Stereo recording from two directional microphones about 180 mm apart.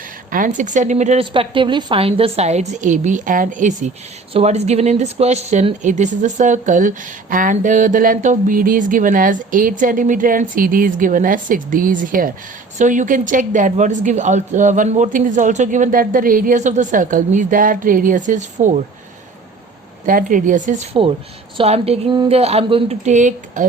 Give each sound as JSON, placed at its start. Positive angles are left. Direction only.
{"t": 0.3, "sound": "a woman's voice", "side_deg": -50}
{"t": 20.1, "sound": "speech", "side_deg": -45}
{"t": 21.6, "sound": "a woman's voice", "side_deg": -35}